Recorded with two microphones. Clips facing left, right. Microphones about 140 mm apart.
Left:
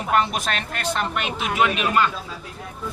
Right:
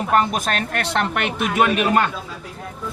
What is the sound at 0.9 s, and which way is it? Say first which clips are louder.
Speech: right 4 dB; 65° right (ahead or behind).